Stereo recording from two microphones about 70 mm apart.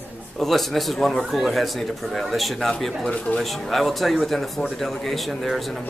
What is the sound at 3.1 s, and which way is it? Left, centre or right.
Speech, centre.